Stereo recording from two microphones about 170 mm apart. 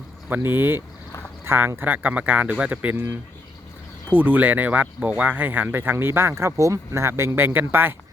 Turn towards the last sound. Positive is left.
turn(degrees=-10)  # may be behind; listen again after turning